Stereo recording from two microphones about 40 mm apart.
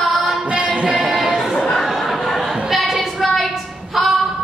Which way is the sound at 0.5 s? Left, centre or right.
Right.